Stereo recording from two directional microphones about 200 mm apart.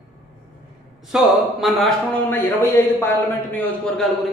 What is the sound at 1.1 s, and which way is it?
Speech, centre (ahead or behind).